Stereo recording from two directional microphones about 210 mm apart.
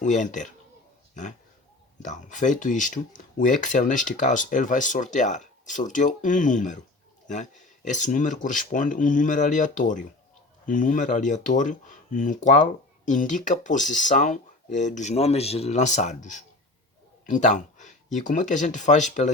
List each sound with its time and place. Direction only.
0.0 s speech: 35° left (ahead or behind)
2.0 s speech: 35° left (ahead or behind)